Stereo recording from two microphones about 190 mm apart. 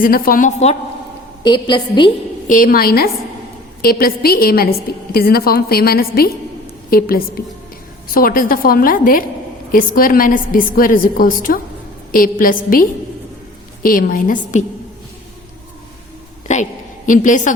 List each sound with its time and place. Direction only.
0.0 s a woman's voice: 50° left (ahead or behind)
1.5 s a woman's voice: 25° left (ahead or behind)
2.5 s a woman's voice: 45° left (ahead or behind)
16.5 s a sound: 40° left (ahead or behind)
17.1 s a woman's voice: 40° left (ahead or behind)